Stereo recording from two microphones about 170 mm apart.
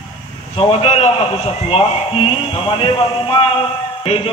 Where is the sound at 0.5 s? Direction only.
35° left (ahead or behind).